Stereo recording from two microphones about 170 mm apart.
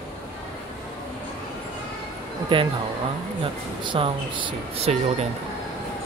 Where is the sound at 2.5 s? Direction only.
30° right (ahead or behind).